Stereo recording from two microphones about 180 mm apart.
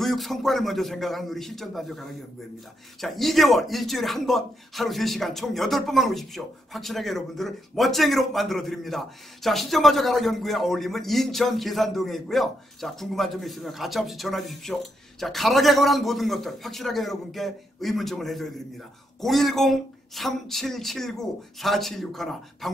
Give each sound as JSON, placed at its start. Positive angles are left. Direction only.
{"t": 0.0, "sound": "speech", "side_deg": 0}